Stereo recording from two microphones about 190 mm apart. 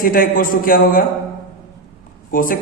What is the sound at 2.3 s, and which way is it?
Speech, 50° left (ahead or behind).